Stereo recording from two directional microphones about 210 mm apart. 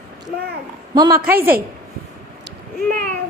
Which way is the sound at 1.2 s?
45° right (ahead or behind).